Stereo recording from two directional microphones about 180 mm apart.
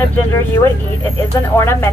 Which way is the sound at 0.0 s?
10° left (ahead or behind).